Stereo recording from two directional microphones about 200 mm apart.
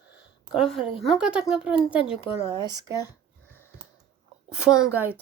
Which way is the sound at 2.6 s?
20° right (ahead or behind).